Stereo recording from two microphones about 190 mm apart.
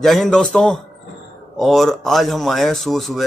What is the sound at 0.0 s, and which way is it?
Speech, centre (ahead or behind).